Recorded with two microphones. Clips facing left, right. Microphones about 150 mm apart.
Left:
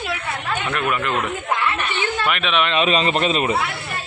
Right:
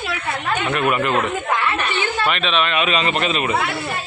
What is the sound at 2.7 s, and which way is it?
Speech, 35° left (ahead or behind).